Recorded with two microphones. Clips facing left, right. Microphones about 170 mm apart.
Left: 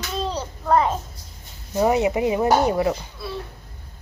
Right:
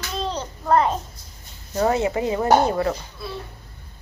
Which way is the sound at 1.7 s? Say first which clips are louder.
Left 2 dB; 15° left (ahead or behind).